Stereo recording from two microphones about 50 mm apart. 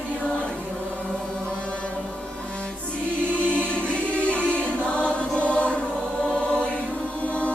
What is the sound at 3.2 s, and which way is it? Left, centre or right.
Choir, right.